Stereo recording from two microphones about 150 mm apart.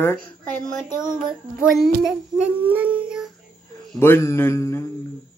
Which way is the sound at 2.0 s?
10° right (ahead or behind).